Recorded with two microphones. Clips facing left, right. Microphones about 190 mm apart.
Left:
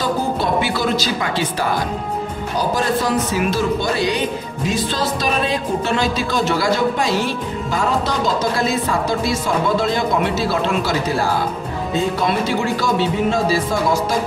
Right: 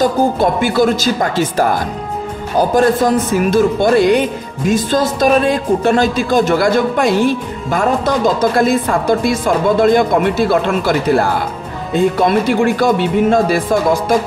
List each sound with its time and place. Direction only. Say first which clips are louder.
0.0 s a woman's voice: right 7 dB; 45° right (ahead or behind)